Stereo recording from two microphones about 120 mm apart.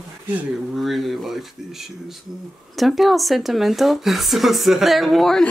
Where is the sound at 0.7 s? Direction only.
Centre (ahead or behind).